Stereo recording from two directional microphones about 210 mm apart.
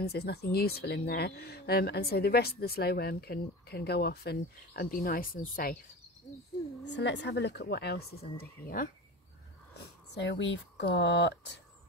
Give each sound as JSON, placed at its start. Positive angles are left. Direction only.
{"t": 0.0, "sound": "speech", "side_deg": 50}
{"t": 6.8, "sound": "speech", "side_deg": 55}
{"t": 10.1, "sound": "speech", "side_deg": 55}